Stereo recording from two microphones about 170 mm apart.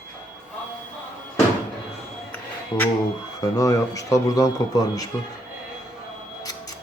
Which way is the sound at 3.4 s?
20° left (ahead or behind).